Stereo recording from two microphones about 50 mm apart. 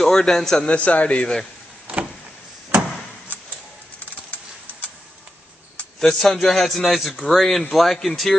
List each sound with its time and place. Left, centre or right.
0.0 s a man's voice: centre
0.7 s a man's voice: left
5.9 s a man's voice: centre